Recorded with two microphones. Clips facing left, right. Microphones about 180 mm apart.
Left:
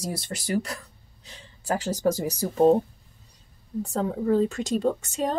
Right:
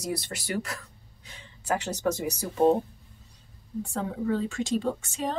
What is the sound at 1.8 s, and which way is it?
Speech, 35° left (ahead or behind).